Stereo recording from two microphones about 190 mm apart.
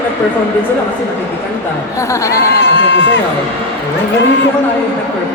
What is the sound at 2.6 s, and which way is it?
Speech, 70° left (ahead or behind).